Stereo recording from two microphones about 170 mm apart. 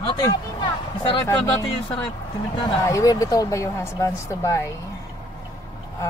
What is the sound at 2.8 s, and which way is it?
Speech, 20° left (ahead or behind).